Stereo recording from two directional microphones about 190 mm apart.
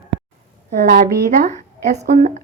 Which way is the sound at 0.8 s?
50° right (ahead or behind).